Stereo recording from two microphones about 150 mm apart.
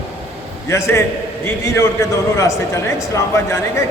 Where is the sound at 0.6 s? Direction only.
20° left (ahead or behind).